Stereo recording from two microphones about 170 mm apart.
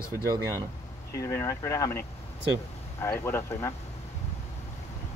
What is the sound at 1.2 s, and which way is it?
Speech, 15° left (ahead or behind).